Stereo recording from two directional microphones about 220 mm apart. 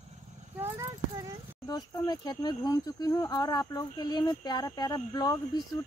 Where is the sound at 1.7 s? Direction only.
15° left (ahead or behind).